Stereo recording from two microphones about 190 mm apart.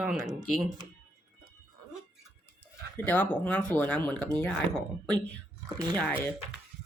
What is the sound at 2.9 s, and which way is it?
Speech, 10° left (ahead or behind).